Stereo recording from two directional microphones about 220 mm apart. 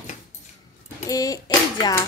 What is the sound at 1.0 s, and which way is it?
Speech, 15° left (ahead or behind).